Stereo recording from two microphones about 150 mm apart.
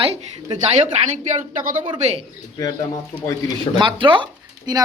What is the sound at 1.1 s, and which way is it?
Speech, 50° right (ahead or behind).